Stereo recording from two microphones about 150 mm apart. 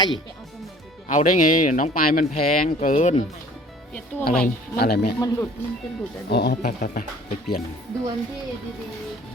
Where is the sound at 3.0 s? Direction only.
50° left (ahead or behind).